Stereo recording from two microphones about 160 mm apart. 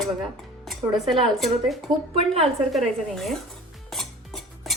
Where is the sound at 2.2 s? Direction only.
35° right (ahead or behind).